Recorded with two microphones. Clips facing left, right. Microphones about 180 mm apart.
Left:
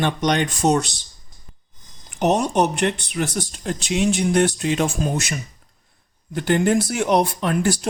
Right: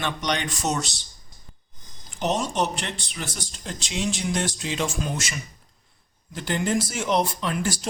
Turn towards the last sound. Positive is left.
turn(degrees=60)  # may be behind; listen again after turning